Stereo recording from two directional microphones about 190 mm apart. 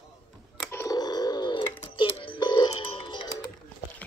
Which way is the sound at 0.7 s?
15° left (ahead or behind).